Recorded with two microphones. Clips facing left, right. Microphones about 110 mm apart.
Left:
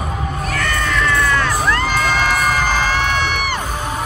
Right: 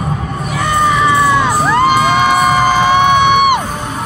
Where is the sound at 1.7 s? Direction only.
15° right (ahead or behind).